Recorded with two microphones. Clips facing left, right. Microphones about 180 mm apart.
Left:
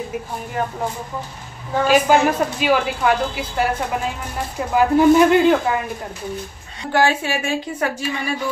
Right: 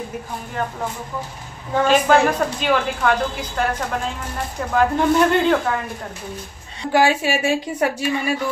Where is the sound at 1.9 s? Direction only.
5° left (ahead or behind).